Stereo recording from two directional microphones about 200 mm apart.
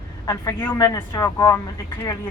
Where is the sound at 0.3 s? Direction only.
15° left (ahead or behind).